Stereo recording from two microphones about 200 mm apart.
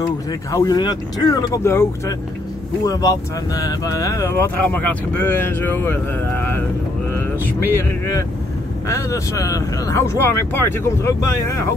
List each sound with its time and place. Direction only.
0.0 s speech: 15° left (ahead or behind)
7.6 s speech: 15° left (ahead or behind)